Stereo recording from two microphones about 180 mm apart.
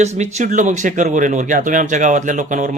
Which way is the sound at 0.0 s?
40° right (ahead or behind).